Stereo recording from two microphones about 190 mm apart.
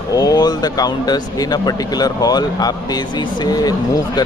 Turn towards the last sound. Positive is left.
turn(degrees=20)  # may be behind; listen again after turning